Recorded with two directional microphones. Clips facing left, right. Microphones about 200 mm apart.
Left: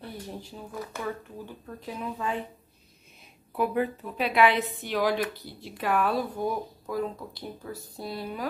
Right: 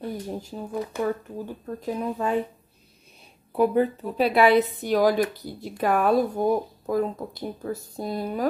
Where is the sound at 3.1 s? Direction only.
35° right (ahead or behind).